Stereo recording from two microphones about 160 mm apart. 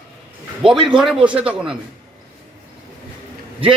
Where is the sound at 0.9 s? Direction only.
5° right (ahead or behind).